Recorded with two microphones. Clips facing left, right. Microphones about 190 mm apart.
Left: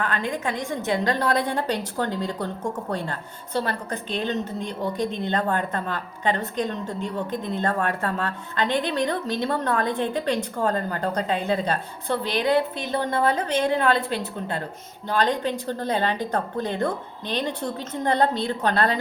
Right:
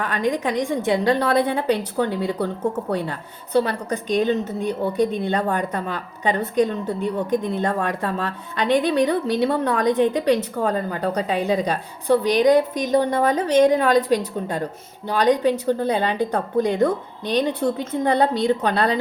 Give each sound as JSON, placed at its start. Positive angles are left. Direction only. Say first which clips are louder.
{"t": 0.0, "sound": "a woman's voice", "louder": "right 4 dB", "side_deg": -15}